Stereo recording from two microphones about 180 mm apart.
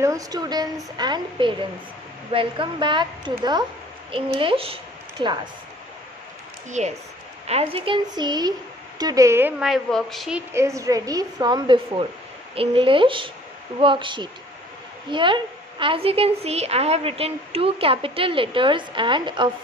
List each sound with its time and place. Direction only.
0.0 s a woman's voice: 20° right (ahead or behind)
6.8 s a woman's voice: 40° right (ahead or behind); by 9.5 s 15° right (ahead or behind)
9.6 s a woman's voice: centre (ahead or behind)
10.5 s a woman's voice: 15° right (ahead or behind)